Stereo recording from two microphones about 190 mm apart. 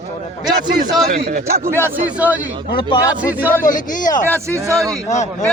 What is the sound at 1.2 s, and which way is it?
Speech, 55° right (ahead or behind).